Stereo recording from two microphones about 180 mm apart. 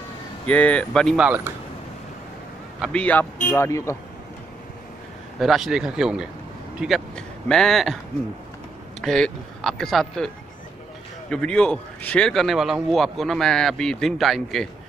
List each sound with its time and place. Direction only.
0.5 s a man's voice: 5° left (ahead or behind)
2.8 s a man's voice: 5° left (ahead or behind)
5.4 s a man's voice: centre (ahead or behind)
9.0 s a man's voice: centre (ahead or behind)